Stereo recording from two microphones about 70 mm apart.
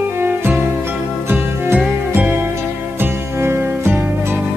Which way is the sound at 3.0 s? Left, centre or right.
Right.